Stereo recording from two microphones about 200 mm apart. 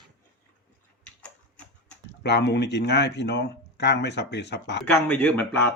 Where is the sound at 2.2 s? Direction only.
60° left (ahead or behind).